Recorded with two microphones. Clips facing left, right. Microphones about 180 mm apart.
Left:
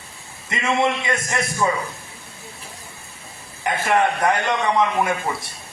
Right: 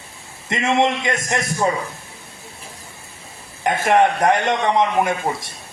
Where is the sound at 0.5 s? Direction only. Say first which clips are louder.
Right 3 dB; 40° right (ahead or behind).